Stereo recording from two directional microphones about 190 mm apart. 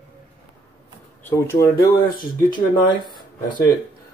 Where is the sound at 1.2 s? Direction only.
15° left (ahead or behind).